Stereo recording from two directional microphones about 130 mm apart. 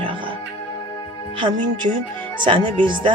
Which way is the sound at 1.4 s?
40° right (ahead or behind).